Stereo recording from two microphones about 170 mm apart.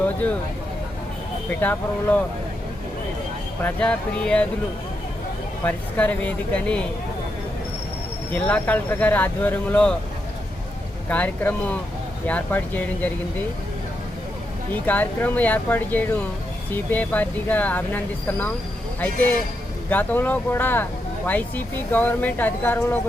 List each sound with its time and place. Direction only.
1.5 s speech: 10° left (ahead or behind)
3.6 s speech: 5° left (ahead or behind)
5.6 s speech: 10° left (ahead or behind)
8.3 s speech: 10° left (ahead or behind)
11.1 s speech: 10° left (ahead or behind)
14.7 s speech: 10° left (ahead or behind)